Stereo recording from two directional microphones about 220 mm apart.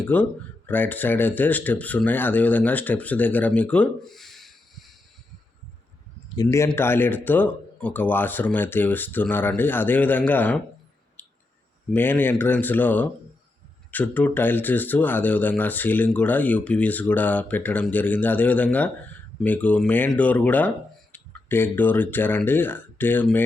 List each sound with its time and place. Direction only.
0.1 s speech: 5° left (ahead or behind)
6.2 s speech: 15° left (ahead or behind)
11.2 s a sound: 10° left (ahead or behind)
11.9 s speech: 10° left (ahead or behind)